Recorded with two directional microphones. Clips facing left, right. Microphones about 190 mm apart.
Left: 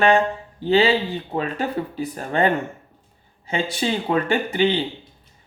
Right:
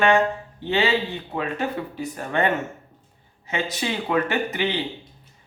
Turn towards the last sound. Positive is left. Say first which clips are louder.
# left 4 dB
turn(degrees=30)  # may be behind; listen again after turning